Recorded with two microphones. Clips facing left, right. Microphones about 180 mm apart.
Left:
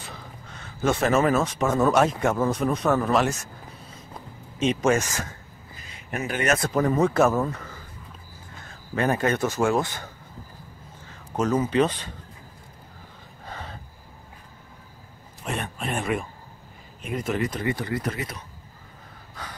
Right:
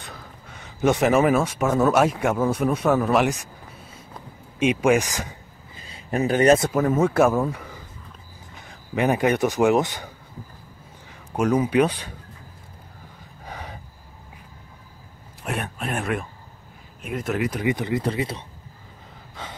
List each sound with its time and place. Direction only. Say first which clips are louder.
0.0 s a sound: even; centre (ahead or behind)
0.6 s speech: right 4 dB; 15° right (ahead or behind)
4.6 s speech: right 3 dB; 10° right (ahead or behind)
5.8 s a sound: right 7 dB; 30° right (ahead or behind)
6.7 s speech: right 1 dB; 5° right (ahead or behind)
13.5 s gasp: right 1 dB; 10° right (ahead or behind)
15.4 s speech: right 1 dB; 5° right (ahead or behind); by 18.4 s 30° right (ahead or behind)